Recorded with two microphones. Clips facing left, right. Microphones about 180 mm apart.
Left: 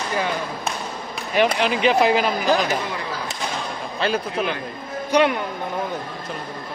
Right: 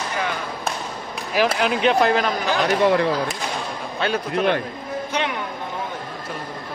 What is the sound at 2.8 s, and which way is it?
Speech, 60° right (ahead or behind).